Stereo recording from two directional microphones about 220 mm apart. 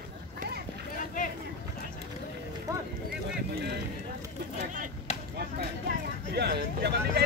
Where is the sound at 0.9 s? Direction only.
35° left (ahead or behind).